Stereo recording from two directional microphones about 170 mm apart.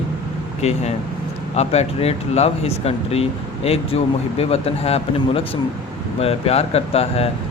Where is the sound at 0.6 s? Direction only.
40° left (ahead or behind).